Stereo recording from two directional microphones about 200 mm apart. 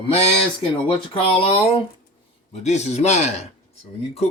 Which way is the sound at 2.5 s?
35° left (ahead or behind).